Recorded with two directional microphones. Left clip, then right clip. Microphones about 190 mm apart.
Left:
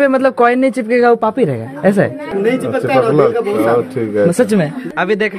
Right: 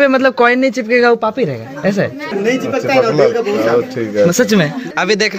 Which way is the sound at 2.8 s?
50° left (ahead or behind).